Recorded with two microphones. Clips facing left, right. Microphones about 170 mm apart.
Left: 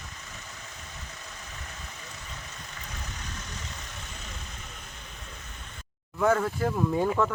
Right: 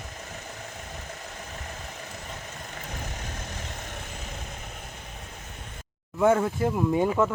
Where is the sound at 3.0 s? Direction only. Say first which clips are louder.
Right 4 dB; 50° right (ahead or behind).